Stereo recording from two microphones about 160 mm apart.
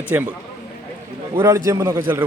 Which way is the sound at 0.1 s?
15° right (ahead or behind).